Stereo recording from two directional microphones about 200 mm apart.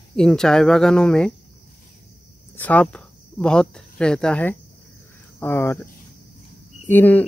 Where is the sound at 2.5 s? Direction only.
10° left (ahead or behind).